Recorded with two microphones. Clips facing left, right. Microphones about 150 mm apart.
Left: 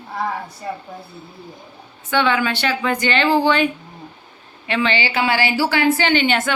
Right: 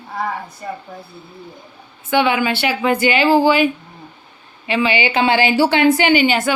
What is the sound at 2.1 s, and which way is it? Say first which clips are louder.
Speech: right 2 dB; 10° right (ahead or behind).